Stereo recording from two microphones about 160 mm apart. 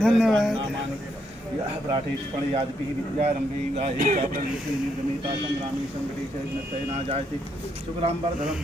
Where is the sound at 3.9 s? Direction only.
60° right (ahead or behind).